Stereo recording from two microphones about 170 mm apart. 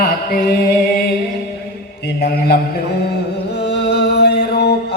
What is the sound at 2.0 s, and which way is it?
Speech, 75° left (ahead or behind).